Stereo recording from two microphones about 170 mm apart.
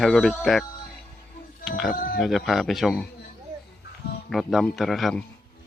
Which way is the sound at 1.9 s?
55° left (ahead or behind).